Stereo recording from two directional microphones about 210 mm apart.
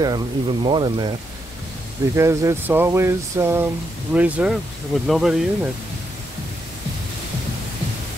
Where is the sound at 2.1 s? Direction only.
15° right (ahead or behind).